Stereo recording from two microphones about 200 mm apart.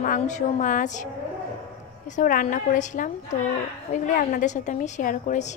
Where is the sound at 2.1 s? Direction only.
40° left (ahead or behind).